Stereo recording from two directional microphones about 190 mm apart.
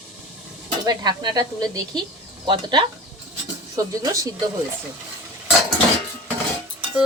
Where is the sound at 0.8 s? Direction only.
20° right (ahead or behind).